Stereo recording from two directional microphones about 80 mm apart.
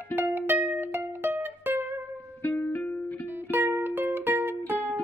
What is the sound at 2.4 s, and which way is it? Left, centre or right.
Music, left.